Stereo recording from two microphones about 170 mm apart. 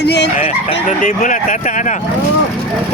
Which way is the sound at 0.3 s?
40° left (ahead or behind).